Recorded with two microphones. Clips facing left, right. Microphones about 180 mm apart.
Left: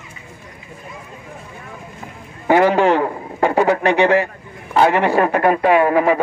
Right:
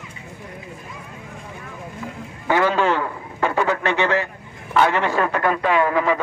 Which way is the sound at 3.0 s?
35° left (ahead or behind).